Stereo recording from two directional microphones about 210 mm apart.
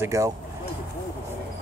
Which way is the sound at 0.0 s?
15° right (ahead or behind).